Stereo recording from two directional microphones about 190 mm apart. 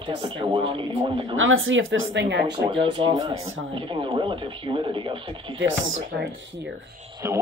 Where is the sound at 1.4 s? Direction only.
90° right.